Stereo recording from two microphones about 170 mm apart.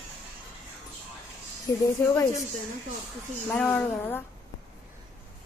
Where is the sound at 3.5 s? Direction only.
10° left (ahead or behind).